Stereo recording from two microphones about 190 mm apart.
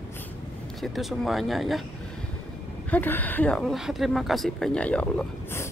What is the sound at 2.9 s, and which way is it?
Speech, 10° left (ahead or behind).